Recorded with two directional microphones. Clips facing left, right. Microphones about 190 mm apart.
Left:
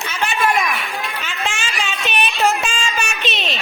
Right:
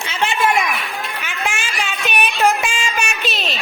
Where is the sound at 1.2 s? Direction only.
10° right (ahead or behind).